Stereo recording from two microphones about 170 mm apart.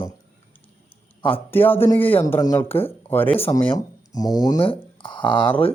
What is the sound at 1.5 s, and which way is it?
Speech, 10° left (ahead or behind).